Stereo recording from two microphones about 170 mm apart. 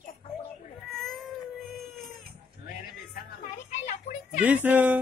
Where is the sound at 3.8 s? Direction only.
45° left (ahead or behind).